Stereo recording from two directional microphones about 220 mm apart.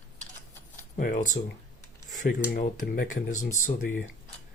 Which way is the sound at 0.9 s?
35° left (ahead or behind).